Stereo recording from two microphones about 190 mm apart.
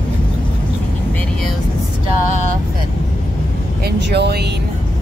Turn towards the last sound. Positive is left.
turn(degrees=-60)  # may be behind; listen again after turning